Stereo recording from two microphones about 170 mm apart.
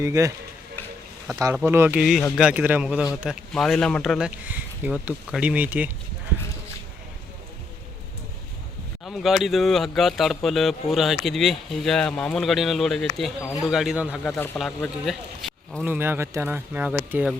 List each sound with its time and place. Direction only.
0.0 s speech: 20° right (ahead or behind)
9.0 s speech: centre (ahead or behind)
14.3 s speech: 10° left (ahead or behind)
15.9 s speech: 15° right (ahead or behind)